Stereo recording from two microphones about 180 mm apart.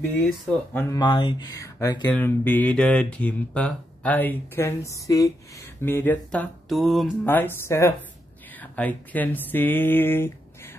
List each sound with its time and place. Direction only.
0.1 s speech: 10° left (ahead or behind)
0.8 s speech: 25° left (ahead or behind); by 7.1 s centre (ahead or behind)
7.2 s speech: 10° left (ahead or behind)